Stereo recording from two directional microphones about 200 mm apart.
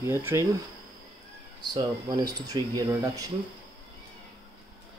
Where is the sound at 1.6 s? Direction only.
20° right (ahead or behind).